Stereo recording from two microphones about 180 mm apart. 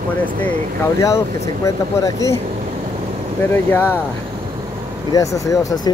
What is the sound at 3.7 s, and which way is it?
Speech, 10° left (ahead or behind).